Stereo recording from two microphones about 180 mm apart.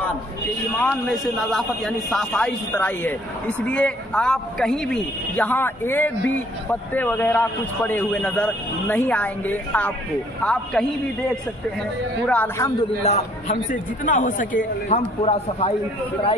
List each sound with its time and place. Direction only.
0.8 s a man's voice: 5° left (ahead or behind)
12.3 s speech: 10° left (ahead or behind)
13.0 s a man's voice: 40° left (ahead or behind)